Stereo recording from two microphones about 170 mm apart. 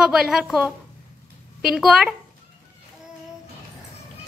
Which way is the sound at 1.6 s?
5° right (ahead or behind).